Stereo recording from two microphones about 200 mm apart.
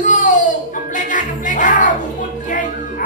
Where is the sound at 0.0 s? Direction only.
40° left (ahead or behind).